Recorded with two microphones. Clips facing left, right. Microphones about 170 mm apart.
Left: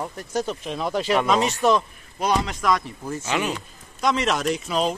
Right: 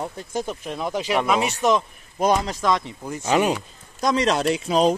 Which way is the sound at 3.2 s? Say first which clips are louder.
Right 6 dB; 40° right (ahead or behind).